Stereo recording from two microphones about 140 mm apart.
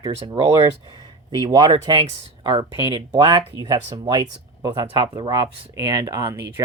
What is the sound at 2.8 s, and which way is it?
Speech, 35° right (ahead or behind).